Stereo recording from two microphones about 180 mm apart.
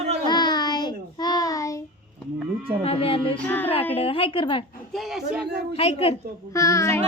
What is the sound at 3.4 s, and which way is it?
Speech, 10° left (ahead or behind).